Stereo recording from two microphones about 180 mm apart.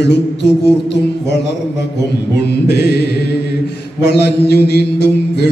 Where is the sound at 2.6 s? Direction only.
65° left (ahead or behind).